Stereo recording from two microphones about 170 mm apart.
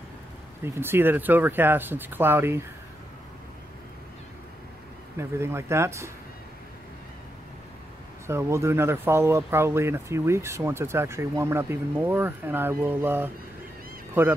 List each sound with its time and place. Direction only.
0.7 s speech: 15° right (ahead or behind)
5.1 s speech: 15° right (ahead or behind)
8.3 s speech: 15° right (ahead or behind)